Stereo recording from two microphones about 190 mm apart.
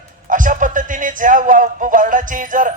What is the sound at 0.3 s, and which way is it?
A man's voice, 45° right (ahead or behind).